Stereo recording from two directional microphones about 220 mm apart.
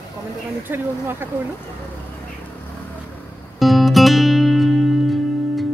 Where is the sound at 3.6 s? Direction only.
Centre (ahead or behind).